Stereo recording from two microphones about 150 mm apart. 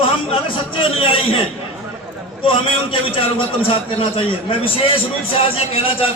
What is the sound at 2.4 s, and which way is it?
A man's voice, 35° left (ahead or behind).